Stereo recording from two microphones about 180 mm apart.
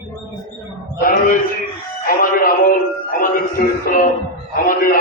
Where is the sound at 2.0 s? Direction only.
50° left (ahead or behind).